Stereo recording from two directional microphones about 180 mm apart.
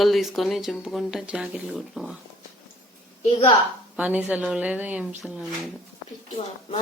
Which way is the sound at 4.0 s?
10° right (ahead or behind).